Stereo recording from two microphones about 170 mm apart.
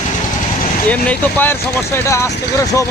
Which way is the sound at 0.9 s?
10° left (ahead or behind).